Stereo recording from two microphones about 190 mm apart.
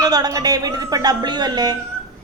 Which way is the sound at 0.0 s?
20° right (ahead or behind).